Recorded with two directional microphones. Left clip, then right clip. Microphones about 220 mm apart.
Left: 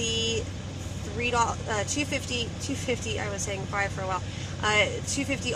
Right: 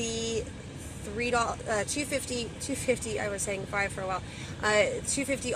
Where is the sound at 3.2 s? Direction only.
20° right (ahead or behind).